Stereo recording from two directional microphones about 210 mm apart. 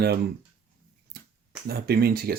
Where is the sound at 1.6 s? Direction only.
45° right (ahead or behind).